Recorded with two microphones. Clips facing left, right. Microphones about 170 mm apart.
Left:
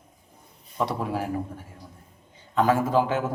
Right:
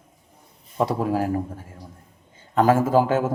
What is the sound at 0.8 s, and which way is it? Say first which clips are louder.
Speech: right 5 dB; 40° right (ahead or behind).